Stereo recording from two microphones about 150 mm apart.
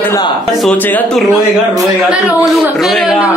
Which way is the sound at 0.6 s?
10° left (ahead or behind).